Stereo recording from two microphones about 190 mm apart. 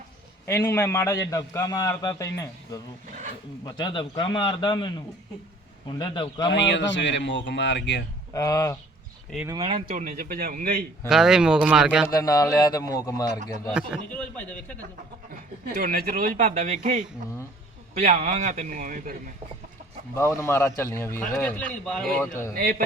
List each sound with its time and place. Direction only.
0.4 s a man's voice: 15° left (ahead or behind)
6.5 s speech: 70° left (ahead or behind)
8.3 s a man's voice: 20° left (ahead or behind)
9.6 s speech: 35° right (ahead or behind)
11.1 s speech: 5° right (ahead or behind)
12.0 s a man's voice: 20° left (ahead or behind)
13.7 s a man's voice: centre (ahead or behind)
15.7 s a man's voice: 50° right (ahead or behind)
20.1 s a man's voice: 15° left (ahead or behind)
22.5 s speech: 50° right (ahead or behind)